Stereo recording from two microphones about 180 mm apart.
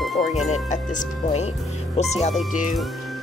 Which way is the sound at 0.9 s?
40° left (ahead or behind).